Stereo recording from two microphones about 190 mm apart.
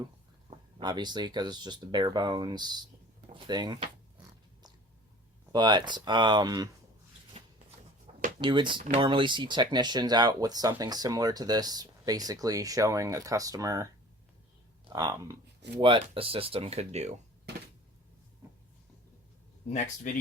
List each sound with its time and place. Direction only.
0.8 s speech: 25° right (ahead or behind)
5.5 s speech: 25° right (ahead or behind)
7.3 s shuffling cards: 35° right (ahead or behind)
8.4 s speech: 25° right (ahead or behind)
14.8 s speech: 20° right (ahead or behind); by 17.2 s 35° right (ahead or behind)
20.1 s speech: 45° left (ahead or behind)